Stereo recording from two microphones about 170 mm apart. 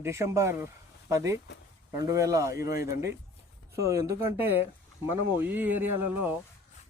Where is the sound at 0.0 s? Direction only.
15° right (ahead or behind).